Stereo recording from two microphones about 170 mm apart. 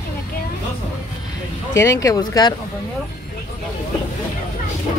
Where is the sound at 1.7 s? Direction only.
20° left (ahead or behind).